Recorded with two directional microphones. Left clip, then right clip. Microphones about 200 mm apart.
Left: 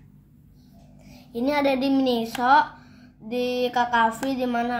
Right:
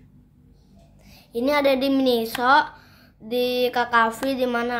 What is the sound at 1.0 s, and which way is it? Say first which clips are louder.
A child's voice: right 3 dB; 25° right (ahead or behind).